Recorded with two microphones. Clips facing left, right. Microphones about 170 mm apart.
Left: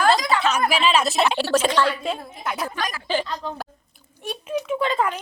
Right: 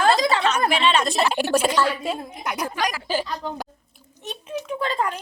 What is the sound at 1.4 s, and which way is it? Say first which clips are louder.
A woman's voice: even; 10° right (ahead or behind).